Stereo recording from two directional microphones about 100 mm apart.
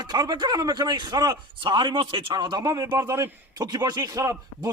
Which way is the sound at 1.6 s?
55° right (ahead or behind).